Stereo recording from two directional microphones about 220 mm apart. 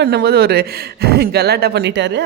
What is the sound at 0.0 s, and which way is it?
Speech, 45° right (ahead or behind).